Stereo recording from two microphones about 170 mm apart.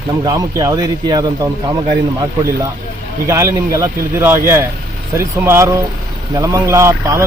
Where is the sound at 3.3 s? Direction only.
20° right (ahead or behind).